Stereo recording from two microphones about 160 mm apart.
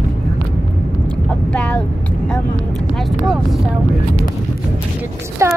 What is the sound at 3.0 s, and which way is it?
Speech, centre (ahead or behind).